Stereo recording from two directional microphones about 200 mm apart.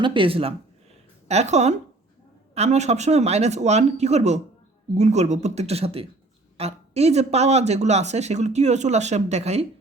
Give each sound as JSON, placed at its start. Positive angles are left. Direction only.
{"t": 0.0, "sound": "speech", "side_deg": -25}